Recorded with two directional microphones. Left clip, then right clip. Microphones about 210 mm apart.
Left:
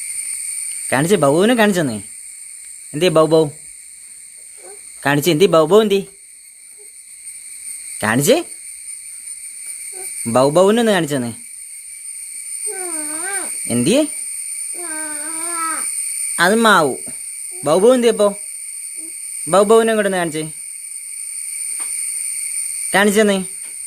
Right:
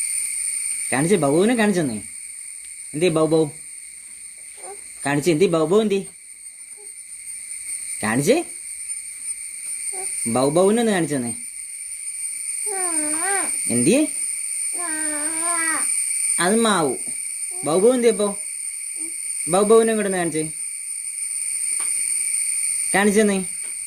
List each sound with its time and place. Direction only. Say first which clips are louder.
0.9 s speech: left 5 dB; 25° left (ahead or behind)
3.0 s speech: left 6 dB; 30° left (ahead or behind)
5.0 s speech: left 5 dB; 30° left (ahead or behind)
8.0 s speech: left 5 dB; 25° left (ahead or behind)
10.3 s speech: left 5 dB; 25° left (ahead or behind)
13.7 s speech: left 3 dB; 20° left (ahead or behind)
14.8 s baby cry: even; centre (ahead or behind)
16.3 s speech: left 7 dB; 20° left (ahead or behind)
19.5 s speech: left 4 dB; 20° left (ahead or behind)
22.9 s speech: left 5 dB; 20° left (ahead or behind)